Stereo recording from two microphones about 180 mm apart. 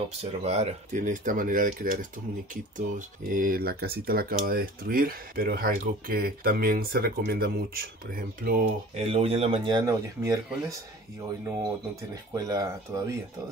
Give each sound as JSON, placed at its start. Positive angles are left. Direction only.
{"t": 0.2, "sound": "speech", "side_deg": -35}
{"t": 8.9, "sound": "speech", "side_deg": -35}
{"t": 12.4, "sound": "speech", "side_deg": -20}